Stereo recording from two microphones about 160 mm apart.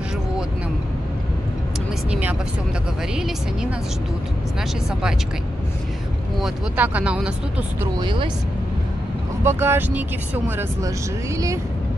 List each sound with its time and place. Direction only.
2.0 s speech: 10° right (ahead or behind)
6.4 s speech: 10° right (ahead or behind)
8.0 s speech: 30° right (ahead or behind)
9.4 s speech: 15° right (ahead or behind)